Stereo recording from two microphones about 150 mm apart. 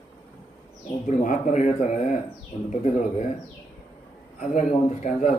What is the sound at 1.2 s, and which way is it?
Speech, 55° left (ahead or behind).